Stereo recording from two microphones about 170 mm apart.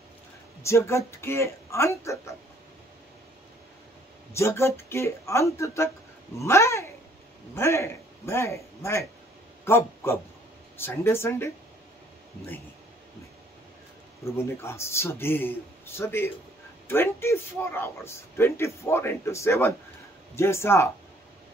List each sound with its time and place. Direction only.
0.6 s a man's voice: 15° left (ahead or behind)
4.3 s a man's voice: 15° left (ahead or behind)
9.7 s a man's voice: 15° left (ahead or behind)
14.2 s a man's voice: 15° left (ahead or behind)